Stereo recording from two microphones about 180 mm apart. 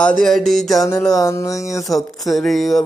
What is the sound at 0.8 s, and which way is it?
Music, 20° left (ahead or behind).